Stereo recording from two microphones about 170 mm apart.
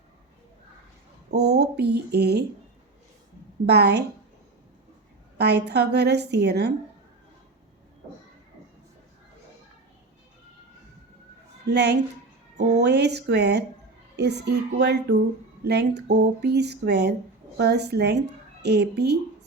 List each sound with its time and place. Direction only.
1.3 s speech: 80° right
3.7 s speech: 75° right (ahead or behind)
5.4 s speech: 80° right
11.6 s a woman's voice: 75° right (ahead or behind)
12.5 s speech: 45° right (ahead or behind)
12.8 s speech: 75° right (ahead or behind)